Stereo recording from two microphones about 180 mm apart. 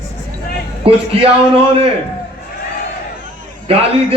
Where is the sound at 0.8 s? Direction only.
30° right (ahead or behind).